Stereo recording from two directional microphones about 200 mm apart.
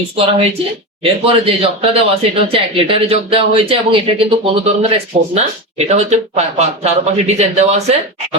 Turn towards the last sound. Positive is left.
turn(degrees=-30)  # may be behind; listen again after turning